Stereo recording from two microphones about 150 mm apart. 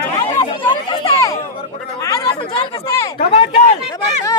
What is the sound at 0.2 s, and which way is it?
Chatter, 30° left (ahead or behind).